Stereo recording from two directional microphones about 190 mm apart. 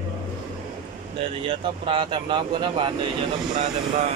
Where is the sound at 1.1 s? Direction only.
30° right (ahead or behind).